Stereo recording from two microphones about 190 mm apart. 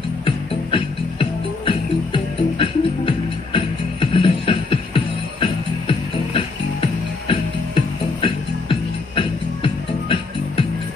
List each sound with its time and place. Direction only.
0.2 s music: 30° left (ahead or behind)